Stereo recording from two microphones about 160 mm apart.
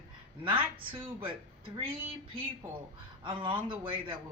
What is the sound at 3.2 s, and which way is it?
Speech, 30° right (ahead or behind).